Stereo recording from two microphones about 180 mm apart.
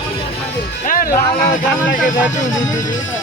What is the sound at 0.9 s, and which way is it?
Speech, 50° left (ahead or behind).